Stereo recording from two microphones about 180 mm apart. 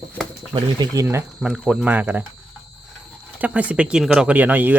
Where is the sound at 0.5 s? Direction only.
25° right (ahead or behind).